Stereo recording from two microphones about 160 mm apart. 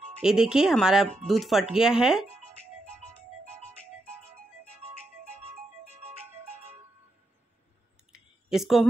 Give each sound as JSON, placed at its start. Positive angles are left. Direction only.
{"t": 0.2, "sound": "speech", "side_deg": -5}
{"t": 5.9, "sound": "music", "side_deg": -40}
{"t": 8.5, "sound": "speech", "side_deg": 0}